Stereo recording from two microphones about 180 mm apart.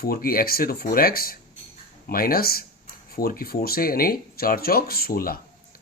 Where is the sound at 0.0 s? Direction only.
55° left (ahead or behind).